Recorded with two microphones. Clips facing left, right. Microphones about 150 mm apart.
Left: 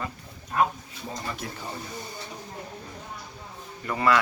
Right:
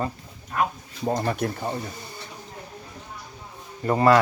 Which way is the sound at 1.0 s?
55° right (ahead or behind).